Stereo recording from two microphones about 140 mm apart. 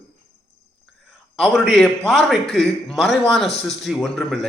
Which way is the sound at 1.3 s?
Centre (ahead or behind).